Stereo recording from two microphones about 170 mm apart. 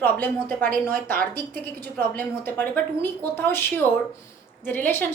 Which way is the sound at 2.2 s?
10° left (ahead or behind).